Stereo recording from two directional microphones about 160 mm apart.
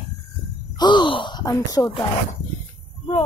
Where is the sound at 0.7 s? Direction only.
30° left (ahead or behind).